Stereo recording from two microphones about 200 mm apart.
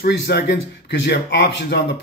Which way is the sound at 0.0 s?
50° left (ahead or behind).